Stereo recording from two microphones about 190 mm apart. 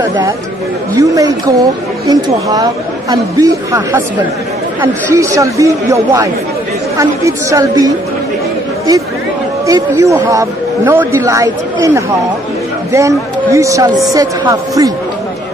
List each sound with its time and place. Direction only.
0.0 s a woman's voice: 20° right (ahead or behind)
5.1 s a woman's voice: 15° right (ahead or behind)
9.7 s a woman's voice: 15° right (ahead or behind)